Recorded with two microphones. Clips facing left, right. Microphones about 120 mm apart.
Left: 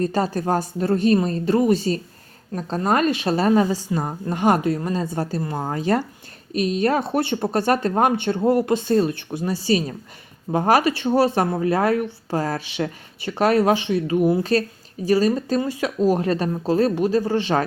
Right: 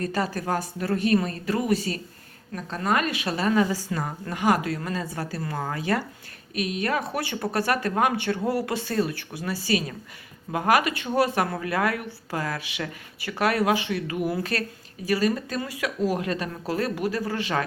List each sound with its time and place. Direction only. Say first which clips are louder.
0.0 s speech: left 6 dB; 30° left (ahead or behind)